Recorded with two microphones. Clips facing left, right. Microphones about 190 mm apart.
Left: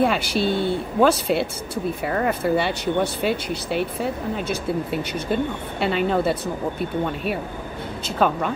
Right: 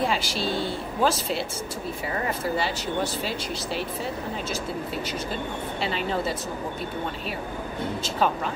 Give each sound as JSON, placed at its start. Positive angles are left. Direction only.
{"t": 0.0, "sound": "speech", "side_deg": 60}